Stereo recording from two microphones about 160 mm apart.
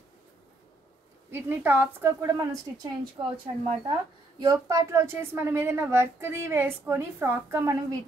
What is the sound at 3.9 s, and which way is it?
A woman's voice, 25° right (ahead or behind).